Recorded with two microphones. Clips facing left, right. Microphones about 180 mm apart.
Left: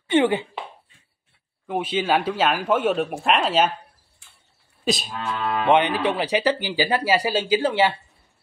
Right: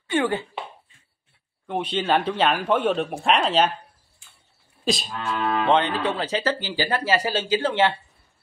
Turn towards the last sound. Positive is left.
turn(degrees=10)  # may be behind; listen again after turning